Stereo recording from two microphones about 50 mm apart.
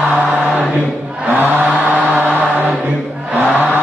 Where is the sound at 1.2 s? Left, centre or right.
Right.